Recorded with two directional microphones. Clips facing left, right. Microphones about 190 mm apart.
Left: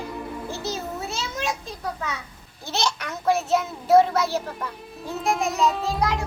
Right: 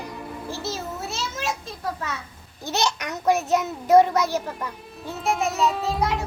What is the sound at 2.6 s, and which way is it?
A child's voice, 15° right (ahead or behind).